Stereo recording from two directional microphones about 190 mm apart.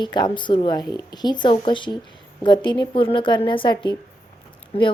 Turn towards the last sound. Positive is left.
turn(degrees=30)  # may be behind; listen again after turning